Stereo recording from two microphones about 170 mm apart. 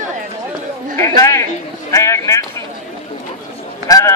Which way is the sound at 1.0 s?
15° left (ahead or behind).